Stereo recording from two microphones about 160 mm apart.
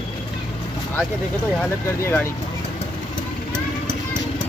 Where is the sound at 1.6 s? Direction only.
15° left (ahead or behind).